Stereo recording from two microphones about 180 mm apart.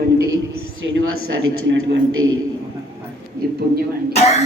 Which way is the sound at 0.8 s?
85° right.